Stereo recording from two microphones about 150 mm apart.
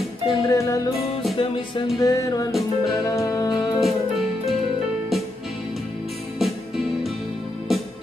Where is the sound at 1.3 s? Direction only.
35° left (ahead or behind).